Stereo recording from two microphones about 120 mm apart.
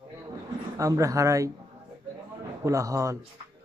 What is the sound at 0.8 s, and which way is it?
Speech, 25° right (ahead or behind).